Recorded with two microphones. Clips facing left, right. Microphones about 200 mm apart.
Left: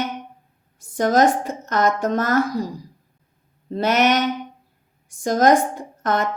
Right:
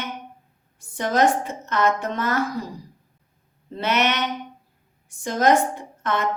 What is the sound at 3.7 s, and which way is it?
Speech, 45° left (ahead or behind).